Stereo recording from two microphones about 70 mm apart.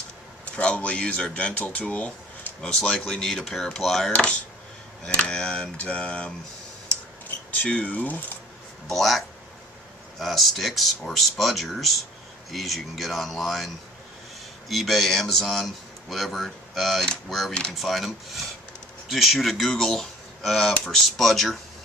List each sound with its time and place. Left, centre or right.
0.5 s a man's voice: centre
4.1 s speech: centre
7.6 s speech: centre
8.9 s a man's voice: centre
14.7 s a man's voice: centre
17.5 s speech: centre
17.7 s a man's voice: centre